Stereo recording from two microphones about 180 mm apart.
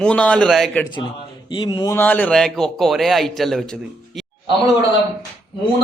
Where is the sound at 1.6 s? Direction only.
25° left (ahead or behind).